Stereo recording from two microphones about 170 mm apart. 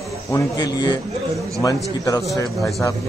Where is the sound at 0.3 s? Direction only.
20° left (ahead or behind).